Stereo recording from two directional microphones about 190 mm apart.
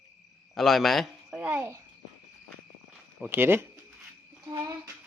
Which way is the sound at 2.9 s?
Centre (ahead or behind).